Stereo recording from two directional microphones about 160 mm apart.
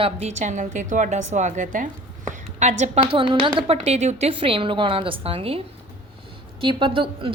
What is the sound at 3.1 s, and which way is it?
A woman's voice, 30° right (ahead or behind).